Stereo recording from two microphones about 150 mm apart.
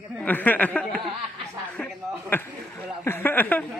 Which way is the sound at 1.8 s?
5° left (ahead or behind).